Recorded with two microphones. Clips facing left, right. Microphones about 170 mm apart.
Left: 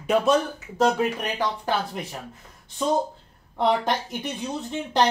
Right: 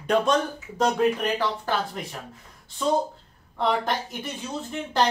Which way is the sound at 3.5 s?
20° left (ahead or behind).